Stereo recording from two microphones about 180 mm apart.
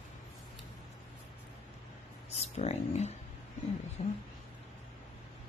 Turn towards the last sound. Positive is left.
turn(degrees=35)  # may be behind; listen again after turning